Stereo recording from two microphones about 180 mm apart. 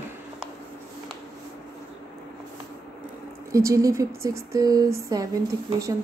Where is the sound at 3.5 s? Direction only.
15° right (ahead or behind).